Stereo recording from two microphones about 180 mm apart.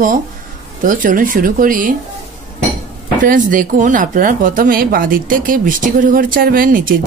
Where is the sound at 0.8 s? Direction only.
50° right (ahead or behind).